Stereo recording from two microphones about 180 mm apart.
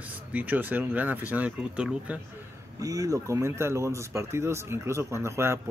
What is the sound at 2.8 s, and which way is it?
Speech, 20° right (ahead or behind).